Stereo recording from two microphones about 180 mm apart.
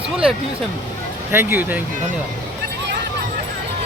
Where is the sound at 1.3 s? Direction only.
10° right (ahead or behind).